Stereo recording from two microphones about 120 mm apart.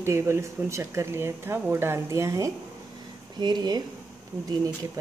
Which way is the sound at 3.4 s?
35° right (ahead or behind).